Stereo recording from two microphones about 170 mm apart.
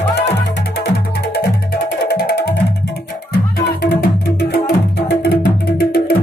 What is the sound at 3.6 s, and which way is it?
Music, 70° left (ahead or behind).